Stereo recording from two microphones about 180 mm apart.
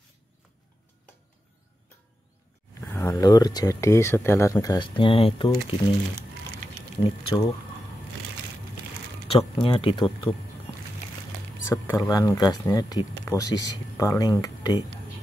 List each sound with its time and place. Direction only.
2.8 s speech: 15° left (ahead or behind); by 5.9 s 30° left (ahead or behind)
7.0 s speech: 30° left (ahead or behind)
9.6 s speech: 30° left (ahead or behind)
11.7 s speech: 15° left (ahead or behind)